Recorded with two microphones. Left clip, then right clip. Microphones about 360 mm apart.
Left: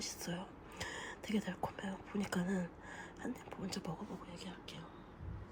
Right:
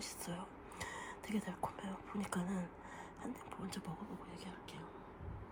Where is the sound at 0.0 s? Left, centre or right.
Centre.